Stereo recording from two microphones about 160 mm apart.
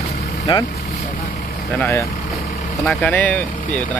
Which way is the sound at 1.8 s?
20° left (ahead or behind).